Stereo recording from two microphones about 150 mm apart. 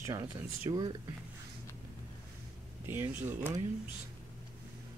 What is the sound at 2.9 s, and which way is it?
Speech, 15° right (ahead or behind).